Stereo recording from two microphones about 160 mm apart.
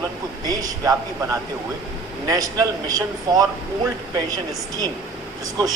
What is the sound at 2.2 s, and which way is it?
A man's voice, 20° right (ahead or behind).